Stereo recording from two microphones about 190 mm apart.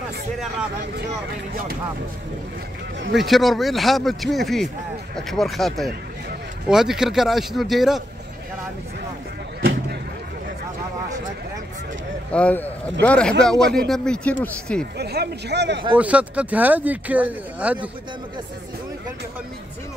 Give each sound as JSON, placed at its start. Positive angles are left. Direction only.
{"t": 3.2, "sound": "speech", "side_deg": 0}
{"t": 12.3, "sound": "speech", "side_deg": 5}
{"t": 15.0, "sound": "speech", "side_deg": -60}
{"t": 16.0, "sound": "speech", "side_deg": -5}